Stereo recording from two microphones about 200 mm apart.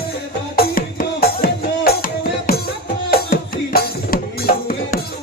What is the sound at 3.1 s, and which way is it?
Music, 50° left (ahead or behind).